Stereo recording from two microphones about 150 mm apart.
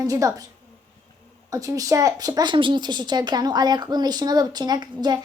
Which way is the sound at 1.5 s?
25° right (ahead or behind).